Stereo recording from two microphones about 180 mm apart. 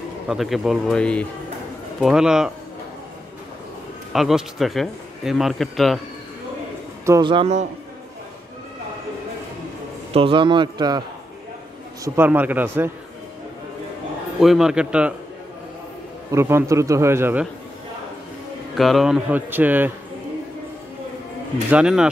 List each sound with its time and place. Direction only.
0.3 s speech: centre (ahead or behind)
4.1 s speech: centre (ahead or behind)
7.1 s a man's voice: 25° right (ahead or behind)
10.1 s a man's voice: 30° right (ahead or behind)
12.0 s a man's voice: 10° right (ahead or behind)
14.4 s speech: centre (ahead or behind)
16.3 s a man's voice: 15° right (ahead or behind)
18.8 s a man's voice: centre (ahead or behind)
21.6 s speech: 5° right (ahead or behind)